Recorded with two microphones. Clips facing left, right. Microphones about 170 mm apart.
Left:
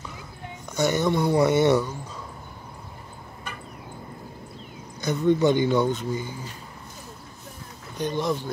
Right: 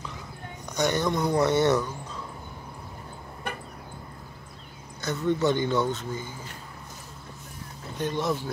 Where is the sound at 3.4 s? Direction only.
60° right (ahead or behind).